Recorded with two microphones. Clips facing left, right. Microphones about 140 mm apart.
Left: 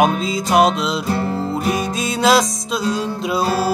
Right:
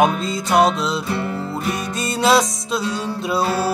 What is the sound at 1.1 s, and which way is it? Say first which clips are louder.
Music: left 3 dB; 35° left (ahead or behind).